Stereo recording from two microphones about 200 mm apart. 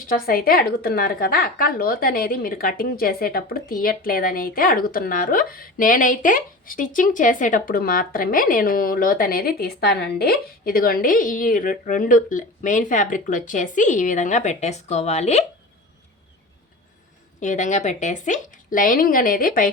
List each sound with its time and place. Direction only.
0.0 s a woman's voice: 45° left (ahead or behind)
17.4 s a woman's voice: 35° left (ahead or behind)